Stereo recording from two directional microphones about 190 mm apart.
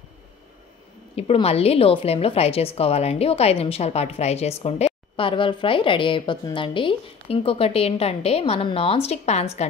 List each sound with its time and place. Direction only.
1.1 s a woman's voice: 30° left (ahead or behind)